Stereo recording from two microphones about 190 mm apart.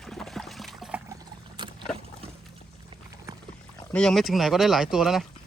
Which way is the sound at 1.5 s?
25° right (ahead or behind).